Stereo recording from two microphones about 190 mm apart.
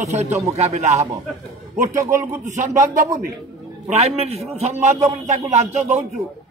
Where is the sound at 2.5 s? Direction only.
40° right (ahead or behind).